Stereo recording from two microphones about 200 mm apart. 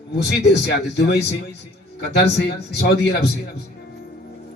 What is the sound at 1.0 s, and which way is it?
Speech, 55° left (ahead or behind).